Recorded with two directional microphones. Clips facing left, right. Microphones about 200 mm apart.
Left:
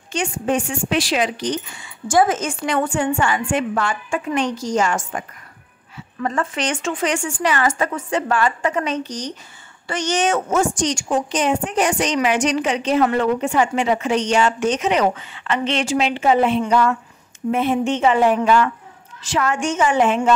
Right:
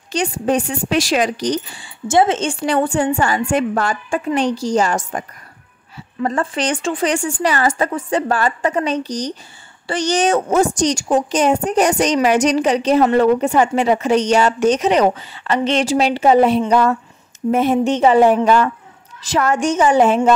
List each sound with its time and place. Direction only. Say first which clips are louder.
0.1 s a woman's voice: right 3 dB; 35° right (ahead or behind)
6.2 s a woman's voice: right 3 dB; 35° right (ahead or behind)